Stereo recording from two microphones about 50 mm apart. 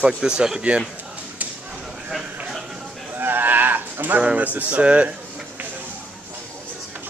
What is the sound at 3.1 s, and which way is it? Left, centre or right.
Livestock, right.